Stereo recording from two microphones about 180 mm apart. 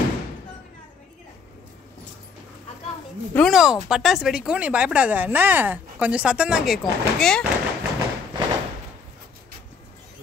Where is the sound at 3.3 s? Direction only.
Centre (ahead or behind).